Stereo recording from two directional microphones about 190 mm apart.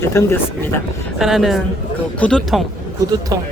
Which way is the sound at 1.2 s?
Centre (ahead or behind).